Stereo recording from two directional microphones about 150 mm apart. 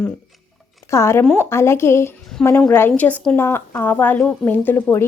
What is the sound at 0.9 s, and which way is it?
A woman's voice, 15° left (ahead or behind).